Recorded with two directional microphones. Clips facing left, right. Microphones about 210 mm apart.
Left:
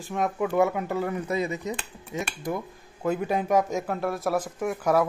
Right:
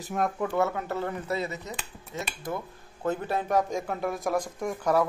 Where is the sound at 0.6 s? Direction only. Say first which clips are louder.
Left 4 dB; 15° left (ahead or behind).